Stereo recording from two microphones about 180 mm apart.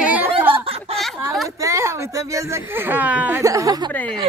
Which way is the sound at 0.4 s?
10° right (ahead or behind).